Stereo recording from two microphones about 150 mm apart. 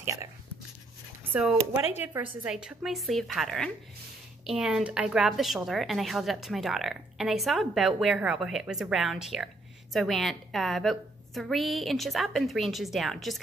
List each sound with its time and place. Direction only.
0.0 s speech: 20° right (ahead or behind)
2.4 s a woman's voice: 5° right (ahead or behind)